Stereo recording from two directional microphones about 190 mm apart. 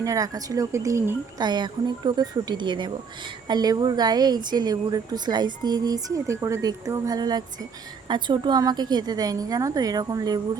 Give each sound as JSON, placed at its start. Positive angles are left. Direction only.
{"t": 0.0, "sound": "speech", "side_deg": -20}